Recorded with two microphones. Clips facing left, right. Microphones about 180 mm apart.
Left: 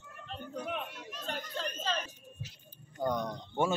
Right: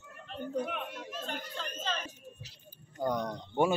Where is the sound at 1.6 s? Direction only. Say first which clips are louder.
Left 2 dB; 35° left (ahead or behind).